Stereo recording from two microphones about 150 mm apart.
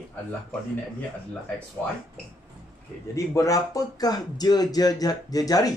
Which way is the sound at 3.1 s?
20° left (ahead or behind).